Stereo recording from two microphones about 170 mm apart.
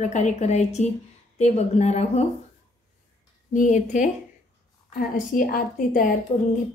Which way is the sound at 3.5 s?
45° left (ahead or behind).